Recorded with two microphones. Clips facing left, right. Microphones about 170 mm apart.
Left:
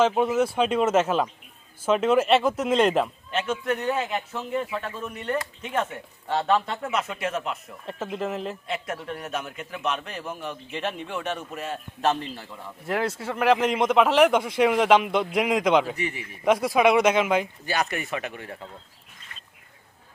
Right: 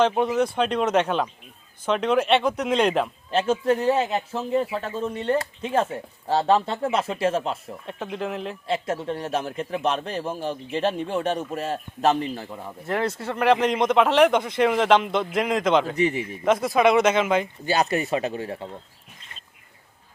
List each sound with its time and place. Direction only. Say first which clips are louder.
0.0 s speech: even; 5° left (ahead or behind)
3.3 s a man's voice: right 5 dB; 30° right (ahead or behind)
7.9 s speech: even; centre (ahead or behind)
8.6 s a man's voice: right 5 dB; 30° right (ahead or behind)
12.2 s a man's voice: right 6 dB; 15° right (ahead or behind)
12.8 s speech: right 1 dB; 5° left (ahead or behind)
17.7 s speech: right 10 dB; 25° right (ahead or behind)